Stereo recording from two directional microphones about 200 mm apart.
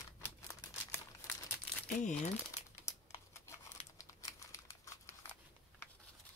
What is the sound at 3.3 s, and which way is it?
Crumpling, 15° left (ahead or behind).